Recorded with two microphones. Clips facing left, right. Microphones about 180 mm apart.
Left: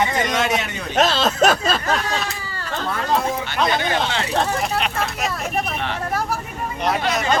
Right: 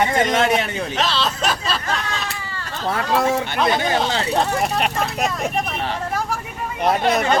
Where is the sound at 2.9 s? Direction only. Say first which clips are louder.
Right 3 dB; 75° right (ahead or behind).